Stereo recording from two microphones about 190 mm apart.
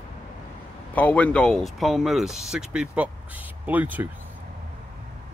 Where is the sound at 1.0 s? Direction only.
10° left (ahead or behind); by 4.0 s 10° right (ahead or behind).